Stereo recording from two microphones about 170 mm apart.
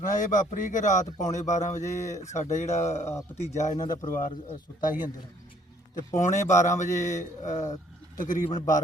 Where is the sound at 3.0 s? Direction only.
15° left (ahead or behind).